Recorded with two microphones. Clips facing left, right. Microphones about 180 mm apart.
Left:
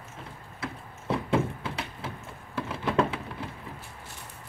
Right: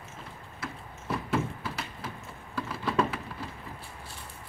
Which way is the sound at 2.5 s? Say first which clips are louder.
Left 2 dB; 25° left (ahead or behind).